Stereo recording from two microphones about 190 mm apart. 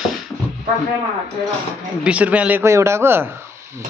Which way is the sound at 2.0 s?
5° right (ahead or behind).